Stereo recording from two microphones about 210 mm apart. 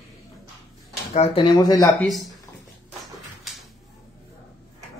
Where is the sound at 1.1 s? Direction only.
30° left (ahead or behind).